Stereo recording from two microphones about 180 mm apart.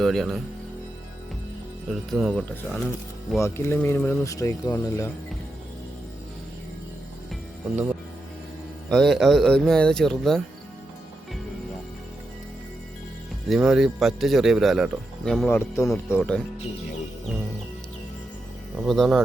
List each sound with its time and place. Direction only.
0.0 s a man's voice: centre (ahead or behind)
1.9 s a man's voice: centre (ahead or behind)
3.4 s speech: 15° left (ahead or behind)
8.9 s a man's voice: centre (ahead or behind)
13.5 s a man's voice: centre (ahead or behind)
15.4 s speech: 15° left (ahead or behind)
18.8 s speech: centre (ahead or behind)